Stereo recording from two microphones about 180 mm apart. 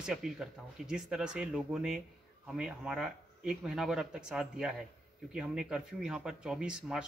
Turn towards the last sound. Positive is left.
turn(degrees=-5)  # may be behind; listen again after turning